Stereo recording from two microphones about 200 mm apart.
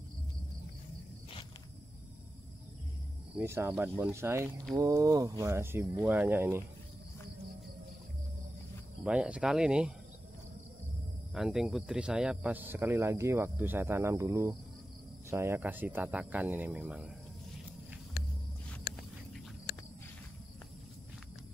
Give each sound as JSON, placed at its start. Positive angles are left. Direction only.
{"t": 3.3, "sound": "speech", "side_deg": -10}
{"t": 9.0, "sound": "speech", "side_deg": -5}
{"t": 11.3, "sound": "speech", "side_deg": 0}